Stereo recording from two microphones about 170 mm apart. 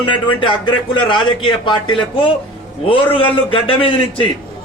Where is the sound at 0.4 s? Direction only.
30° left (ahead or behind).